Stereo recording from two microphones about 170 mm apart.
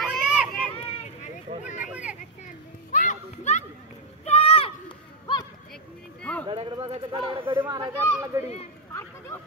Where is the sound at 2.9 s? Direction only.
45° left (ahead or behind).